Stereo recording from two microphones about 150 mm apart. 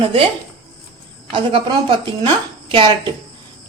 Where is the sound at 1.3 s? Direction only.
35° right (ahead or behind).